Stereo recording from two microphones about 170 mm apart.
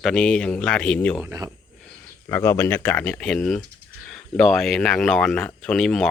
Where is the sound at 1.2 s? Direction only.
20° right (ahead or behind).